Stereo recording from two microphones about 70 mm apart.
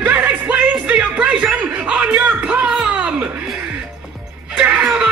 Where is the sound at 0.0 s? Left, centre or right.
Right.